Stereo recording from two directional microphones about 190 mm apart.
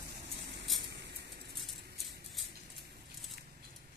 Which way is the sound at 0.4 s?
65° right (ahead or behind).